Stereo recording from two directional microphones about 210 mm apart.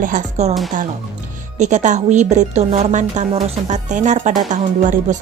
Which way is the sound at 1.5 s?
35° right (ahead or behind).